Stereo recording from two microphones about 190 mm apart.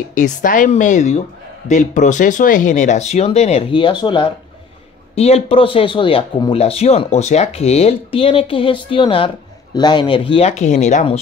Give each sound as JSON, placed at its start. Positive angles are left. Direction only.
{"t": 0.1, "sound": "speech", "side_deg": 45}